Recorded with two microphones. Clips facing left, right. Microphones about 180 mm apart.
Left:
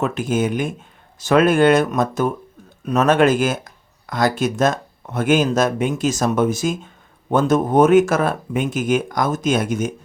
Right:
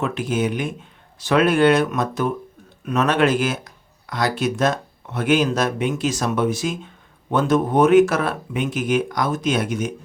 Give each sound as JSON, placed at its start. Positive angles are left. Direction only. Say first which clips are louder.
{"t": 0.0, "sound": "speech", "louder": "left 2 dB", "side_deg": 45}